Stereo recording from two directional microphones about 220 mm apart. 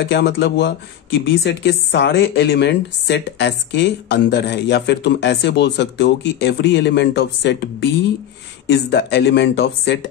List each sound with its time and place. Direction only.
0.0 s a woman's voice: 50° left (ahead or behind)